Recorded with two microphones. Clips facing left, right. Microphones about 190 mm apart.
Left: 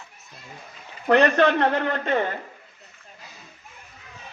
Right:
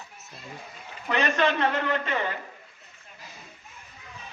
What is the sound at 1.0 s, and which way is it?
A man's voice, 65° left (ahead or behind).